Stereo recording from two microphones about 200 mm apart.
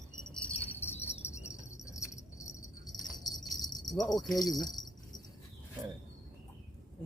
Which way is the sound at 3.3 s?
20° left (ahead or behind).